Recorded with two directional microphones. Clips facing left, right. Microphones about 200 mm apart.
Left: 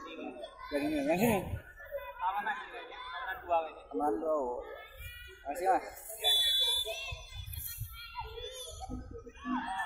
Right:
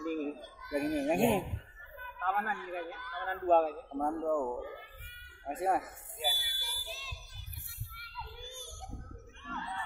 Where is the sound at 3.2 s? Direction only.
55° right (ahead or behind).